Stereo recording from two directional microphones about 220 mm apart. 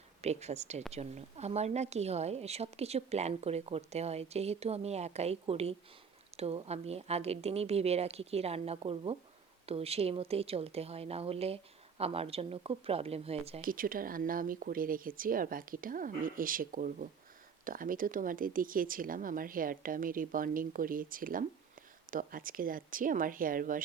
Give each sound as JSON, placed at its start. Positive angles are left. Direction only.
{"t": 0.2, "sound": "a woman's voice", "side_deg": -30}
{"t": 13.6, "sound": "speech", "side_deg": -40}